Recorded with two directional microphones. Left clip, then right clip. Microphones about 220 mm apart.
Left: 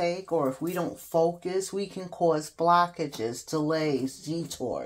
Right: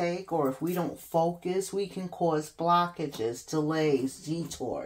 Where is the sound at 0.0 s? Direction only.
35° left (ahead or behind).